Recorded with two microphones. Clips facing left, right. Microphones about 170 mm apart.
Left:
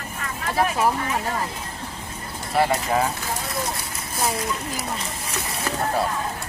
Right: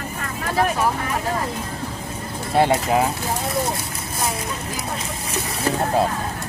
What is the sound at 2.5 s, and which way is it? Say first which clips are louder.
Speech: right 3 dB; 25° right (ahead or behind).